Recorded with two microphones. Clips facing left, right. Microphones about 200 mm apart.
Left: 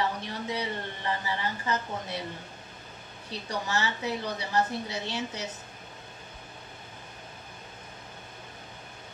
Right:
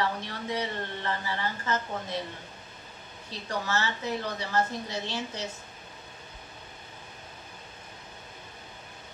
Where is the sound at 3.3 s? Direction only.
15° left (ahead or behind).